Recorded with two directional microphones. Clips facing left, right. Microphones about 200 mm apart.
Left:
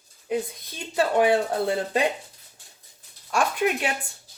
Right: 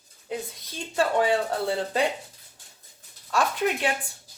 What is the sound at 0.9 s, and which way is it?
Speech, 15° left (ahead or behind).